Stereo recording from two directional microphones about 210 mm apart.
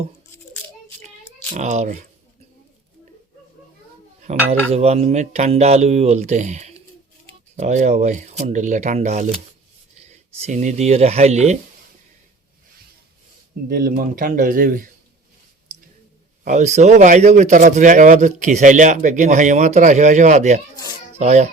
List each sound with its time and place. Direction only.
1.5 s a man's voice: 35° right (ahead or behind)
4.3 s a man's voice: 35° right (ahead or behind)
13.7 s speech: 45° right (ahead or behind)
16.4 s a man's voice: 35° right (ahead or behind)